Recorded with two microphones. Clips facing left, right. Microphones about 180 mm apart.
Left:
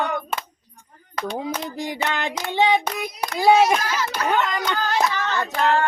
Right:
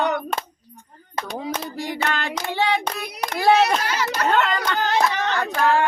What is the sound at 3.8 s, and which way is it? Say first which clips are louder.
Speech: right 1 dB; 70° right (ahead or behind).